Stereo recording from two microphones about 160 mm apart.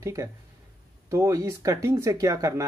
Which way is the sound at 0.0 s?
20° right (ahead or behind).